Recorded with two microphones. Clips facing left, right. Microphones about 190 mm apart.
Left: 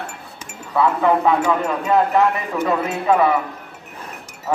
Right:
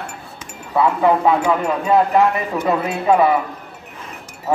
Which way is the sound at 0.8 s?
15° right (ahead or behind).